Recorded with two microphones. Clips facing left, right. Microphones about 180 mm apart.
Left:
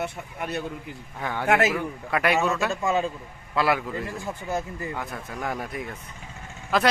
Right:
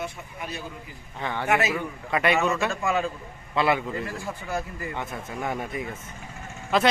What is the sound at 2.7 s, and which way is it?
Speech, 20° left (ahead or behind).